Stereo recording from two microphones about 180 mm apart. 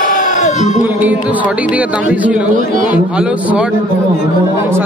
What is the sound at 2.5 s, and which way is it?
Speech, 45° right (ahead or behind).